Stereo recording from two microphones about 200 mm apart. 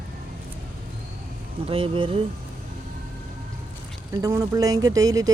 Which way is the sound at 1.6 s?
25° right (ahead or behind).